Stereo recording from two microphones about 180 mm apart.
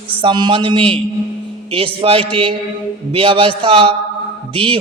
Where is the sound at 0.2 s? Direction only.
25° right (ahead or behind).